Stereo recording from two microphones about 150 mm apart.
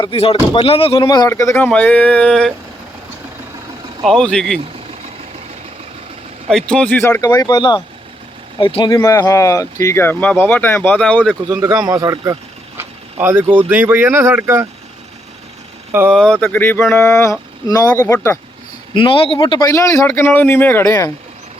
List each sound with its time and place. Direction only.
0.0 s speech: 40° left (ahead or behind)
1.0 s speech: 25° left (ahead or behind); by 2.5 s 5° left (ahead or behind)
4.0 s speech: 5° left (ahead or behind)
6.5 s speech: 5° left (ahead or behind)
7.2 s speech: 25° left (ahead or behind); by 11.2 s 10° left (ahead or behind)
11.4 s speech: 25° right (ahead or behind)
13.1 s speech: 15° right (ahead or behind)
15.9 s speech: 15° right (ahead or behind)
16.1 s speech: 5° left (ahead or behind)
18.9 s speech: 35° left (ahead or behind); by 20.9 s 15° left (ahead or behind)